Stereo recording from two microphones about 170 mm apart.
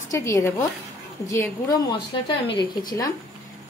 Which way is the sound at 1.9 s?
30° left (ahead or behind).